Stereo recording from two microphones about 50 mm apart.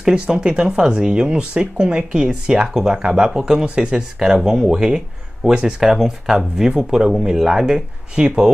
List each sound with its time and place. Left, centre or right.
0.0 s speech: centre
5.9 s speech: centre